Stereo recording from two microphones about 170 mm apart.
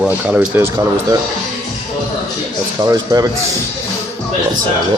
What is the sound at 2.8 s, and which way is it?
Speech, 20° right (ahead or behind).